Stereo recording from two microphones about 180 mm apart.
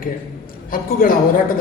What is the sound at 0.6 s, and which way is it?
Speech, 50° left (ahead or behind).